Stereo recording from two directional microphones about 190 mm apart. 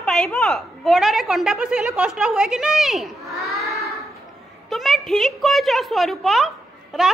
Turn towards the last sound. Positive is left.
turn(degrees=0)  # may be behind; listen again after turning